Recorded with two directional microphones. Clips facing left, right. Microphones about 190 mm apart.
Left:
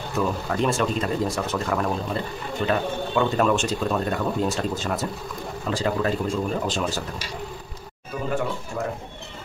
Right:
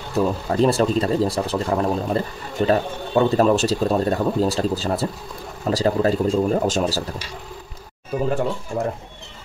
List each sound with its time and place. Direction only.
0.1 s speech: 35° right (ahead or behind)
8.1 s speech: 40° right (ahead or behind)